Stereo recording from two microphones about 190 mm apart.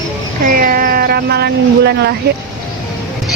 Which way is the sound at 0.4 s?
50° right (ahead or behind).